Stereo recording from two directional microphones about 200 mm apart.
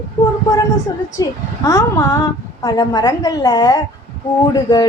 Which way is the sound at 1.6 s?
15° left (ahead or behind).